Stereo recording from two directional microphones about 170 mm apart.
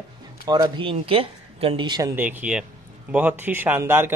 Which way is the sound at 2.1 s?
10° right (ahead or behind).